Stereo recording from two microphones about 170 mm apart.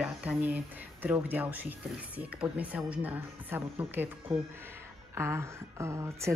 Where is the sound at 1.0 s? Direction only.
10° right (ahead or behind).